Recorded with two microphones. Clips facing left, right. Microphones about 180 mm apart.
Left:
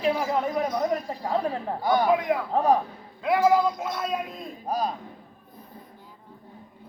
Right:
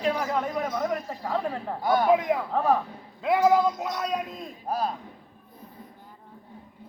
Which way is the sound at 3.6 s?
20° right (ahead or behind).